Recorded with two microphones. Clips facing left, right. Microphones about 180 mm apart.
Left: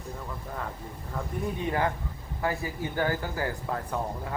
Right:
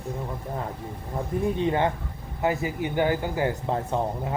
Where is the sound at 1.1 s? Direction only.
25° right (ahead or behind).